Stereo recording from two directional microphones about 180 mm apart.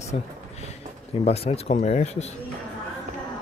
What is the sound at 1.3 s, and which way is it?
Speech, 35° left (ahead or behind).